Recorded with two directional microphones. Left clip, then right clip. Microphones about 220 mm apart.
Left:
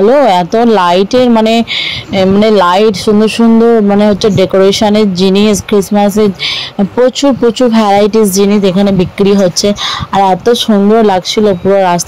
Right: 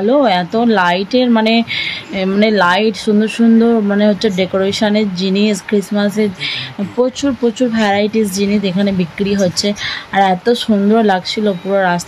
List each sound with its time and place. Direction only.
0.1 s speech: 25° left (ahead or behind)